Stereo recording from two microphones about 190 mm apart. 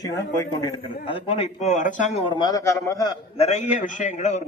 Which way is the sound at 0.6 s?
25° left (ahead or behind).